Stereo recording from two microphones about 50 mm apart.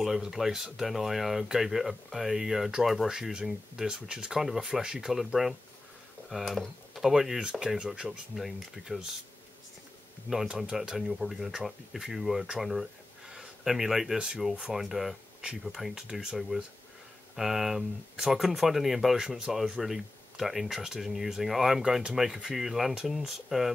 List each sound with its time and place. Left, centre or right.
0.0 s speech: centre
7.6 s speech: centre
8.4 s speech: centre
10.6 s speech: centre
13.3 s a sound: centre
14.1 s speech: centre